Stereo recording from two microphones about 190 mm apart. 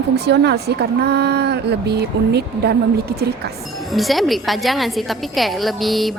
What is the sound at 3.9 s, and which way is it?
A woman's voice, centre (ahead or behind).